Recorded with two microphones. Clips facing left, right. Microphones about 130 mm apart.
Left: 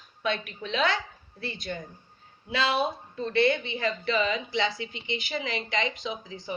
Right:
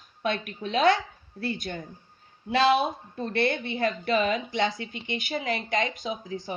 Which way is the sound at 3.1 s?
50° right (ahead or behind).